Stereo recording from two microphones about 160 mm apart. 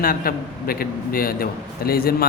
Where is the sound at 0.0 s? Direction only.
65° left (ahead or behind).